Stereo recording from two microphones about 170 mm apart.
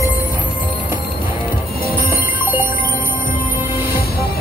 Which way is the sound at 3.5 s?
65° left (ahead or behind).